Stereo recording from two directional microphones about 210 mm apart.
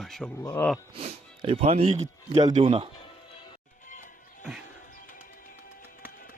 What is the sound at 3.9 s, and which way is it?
Music, 35° left (ahead or behind).